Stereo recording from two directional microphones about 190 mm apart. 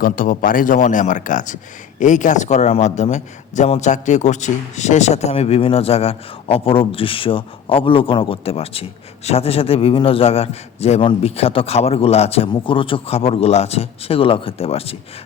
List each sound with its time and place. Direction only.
0.0 s a man's voice: 45° left (ahead or behind)